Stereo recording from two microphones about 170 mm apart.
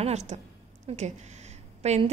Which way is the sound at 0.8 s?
40° right (ahead or behind).